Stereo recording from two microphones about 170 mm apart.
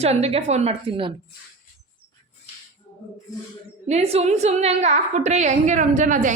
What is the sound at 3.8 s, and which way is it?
A woman's voice, 40° right (ahead or behind).